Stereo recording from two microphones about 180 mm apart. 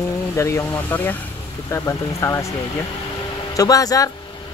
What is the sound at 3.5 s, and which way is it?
Speech, 20° left (ahead or behind).